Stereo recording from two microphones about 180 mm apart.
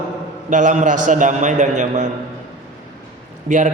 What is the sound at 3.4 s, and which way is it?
Speech, 45° right (ahead or behind).